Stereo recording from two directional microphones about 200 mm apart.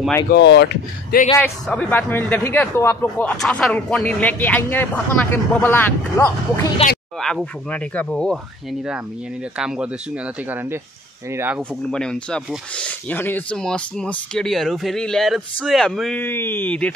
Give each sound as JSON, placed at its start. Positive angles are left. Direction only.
{"t": 0.3, "sound": "speech", "side_deg": 60}
{"t": 1.4, "sound": "a man's voice", "side_deg": 10}
{"t": 6.8, "sound": "speech", "side_deg": 30}
{"t": 7.2, "sound": "speech", "side_deg": 5}
{"t": 9.6, "sound": "speech", "side_deg": -5}
{"t": 11.3, "sound": "speech", "side_deg": -10}
{"t": 11.9, "sound": "speech", "side_deg": 5}